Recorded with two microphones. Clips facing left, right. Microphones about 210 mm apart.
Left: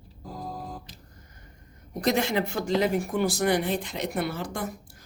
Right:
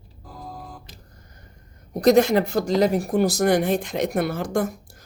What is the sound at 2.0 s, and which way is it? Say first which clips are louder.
Speech: right 9 dB; 40° right (ahead or behind).